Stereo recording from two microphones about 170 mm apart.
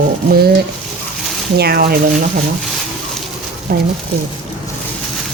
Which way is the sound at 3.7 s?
65° right (ahead or behind).